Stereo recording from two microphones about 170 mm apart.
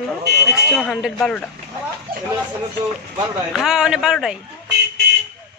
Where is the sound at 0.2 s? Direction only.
75° right (ahead or behind).